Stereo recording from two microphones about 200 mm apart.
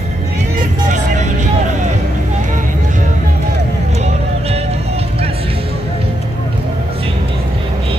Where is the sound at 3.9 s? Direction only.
30° right (ahead or behind).